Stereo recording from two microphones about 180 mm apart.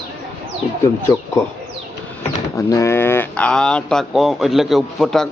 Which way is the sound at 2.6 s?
15° left (ahead or behind).